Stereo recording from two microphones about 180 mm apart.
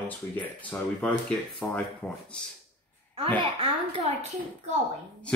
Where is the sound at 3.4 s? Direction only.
30° right (ahead or behind).